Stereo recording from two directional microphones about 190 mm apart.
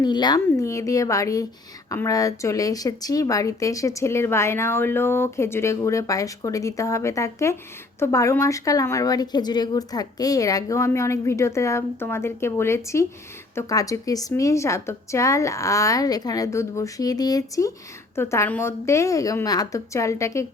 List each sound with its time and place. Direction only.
0.0 s speech: 20° left (ahead or behind)